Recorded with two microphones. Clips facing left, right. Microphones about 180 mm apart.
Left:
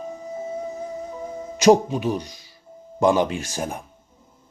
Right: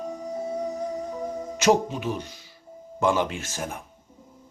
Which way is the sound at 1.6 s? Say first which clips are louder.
Left 6 dB; 15° left (ahead or behind).